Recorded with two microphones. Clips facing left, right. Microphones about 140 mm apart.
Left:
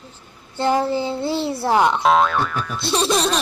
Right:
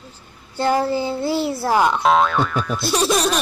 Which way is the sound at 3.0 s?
5° right (ahead or behind).